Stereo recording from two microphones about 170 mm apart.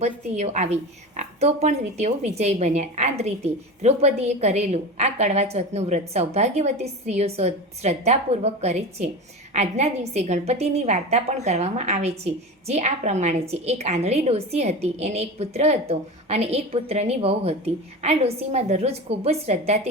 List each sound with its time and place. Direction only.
0.0 s a woman's voice: 40° right (ahead or behind)